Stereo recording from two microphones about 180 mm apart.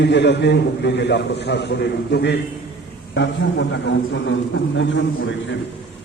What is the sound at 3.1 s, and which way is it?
A man's voice, 80° left.